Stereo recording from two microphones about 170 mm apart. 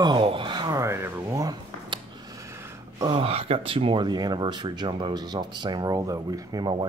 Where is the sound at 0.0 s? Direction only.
30° right (ahead or behind).